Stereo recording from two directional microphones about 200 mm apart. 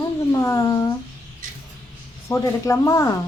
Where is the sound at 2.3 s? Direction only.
15° left (ahead or behind).